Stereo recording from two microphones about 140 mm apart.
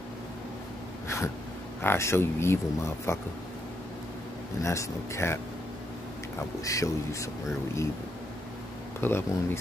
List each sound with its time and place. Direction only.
1.0 s a sound: 20° left (ahead or behind)
1.8 s speech: 15° left (ahead or behind)
4.6 s speech: 20° left (ahead or behind)
6.6 s speech: 25° left (ahead or behind)
9.0 s speech: 15° left (ahead or behind)